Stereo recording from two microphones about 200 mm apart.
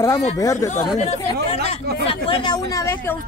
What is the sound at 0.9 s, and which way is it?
A woman's voice, 35° left (ahead or behind).